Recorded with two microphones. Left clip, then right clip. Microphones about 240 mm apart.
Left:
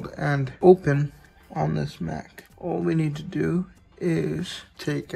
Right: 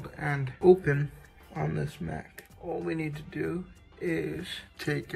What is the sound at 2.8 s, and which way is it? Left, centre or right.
Speech, left.